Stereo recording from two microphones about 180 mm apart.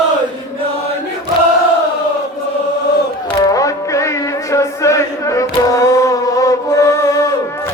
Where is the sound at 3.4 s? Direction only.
20° left (ahead or behind).